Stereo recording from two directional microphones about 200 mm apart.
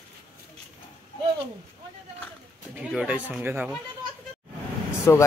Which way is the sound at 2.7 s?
5° right (ahead or behind).